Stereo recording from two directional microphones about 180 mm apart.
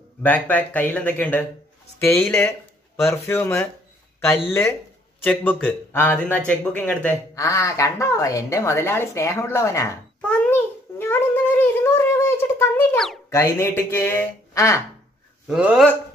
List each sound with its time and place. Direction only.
0.2 s speech: 10° left (ahead or behind)
10.2 s a sound: 5° left (ahead or behind)
12.9 s speech: centre (ahead or behind)
13.3 s speech: 15° left (ahead or behind)
15.4 s speech: 5° right (ahead or behind)